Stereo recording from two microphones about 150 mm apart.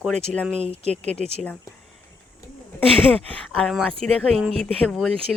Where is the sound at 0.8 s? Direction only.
50° right (ahead or behind).